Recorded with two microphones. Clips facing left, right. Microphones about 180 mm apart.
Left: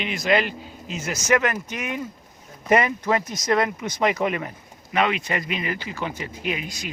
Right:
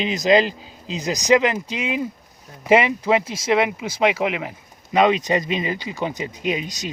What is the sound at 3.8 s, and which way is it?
Speech, 10° right (ahead or behind).